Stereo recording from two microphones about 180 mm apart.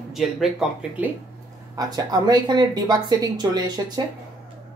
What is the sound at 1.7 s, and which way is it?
A woman's voice, 20° right (ahead or behind).